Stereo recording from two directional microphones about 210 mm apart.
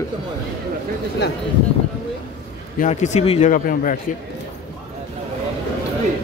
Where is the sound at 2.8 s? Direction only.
35° left (ahead or behind).